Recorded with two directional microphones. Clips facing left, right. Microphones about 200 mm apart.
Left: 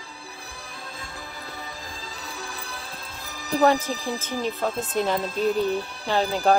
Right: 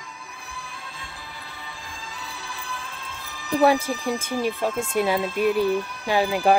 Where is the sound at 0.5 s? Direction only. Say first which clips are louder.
Right 2 dB; 40° left (ahead or behind).